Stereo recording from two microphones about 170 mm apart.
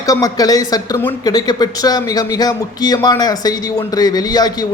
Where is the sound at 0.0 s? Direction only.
20° left (ahead or behind).